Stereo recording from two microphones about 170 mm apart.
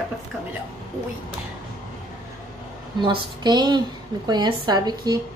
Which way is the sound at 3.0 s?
25° right (ahead or behind).